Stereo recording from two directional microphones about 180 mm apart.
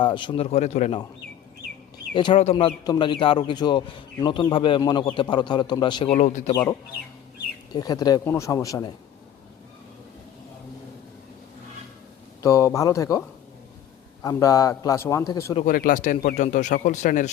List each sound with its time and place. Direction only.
0.0 s a man's voice: 25° left (ahead or behind)
2.1 s a man's voice: 30° left (ahead or behind)
6.1 s a man's voice: 40° left (ahead or behind)
7.7 s a man's voice: 20° left (ahead or behind)
12.4 s a man's voice: 15° left (ahead or behind)
15.6 s speech: 50° left (ahead or behind)